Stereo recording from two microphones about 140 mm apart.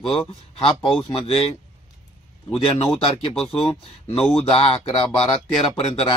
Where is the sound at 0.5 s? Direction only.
40° left (ahead or behind).